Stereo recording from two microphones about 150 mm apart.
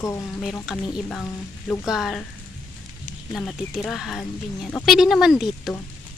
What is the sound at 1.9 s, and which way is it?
Speech, centre (ahead or behind).